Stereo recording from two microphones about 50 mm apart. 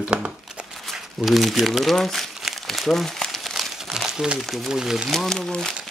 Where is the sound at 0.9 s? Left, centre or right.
Centre.